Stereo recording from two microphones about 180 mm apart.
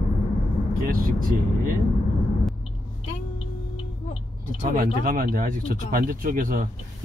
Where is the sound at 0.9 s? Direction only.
50° right (ahead or behind).